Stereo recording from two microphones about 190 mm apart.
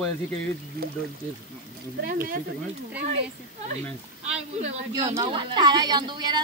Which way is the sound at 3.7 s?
35° right (ahead or behind).